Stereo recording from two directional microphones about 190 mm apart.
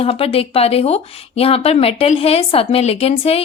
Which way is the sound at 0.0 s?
30° left (ahead or behind).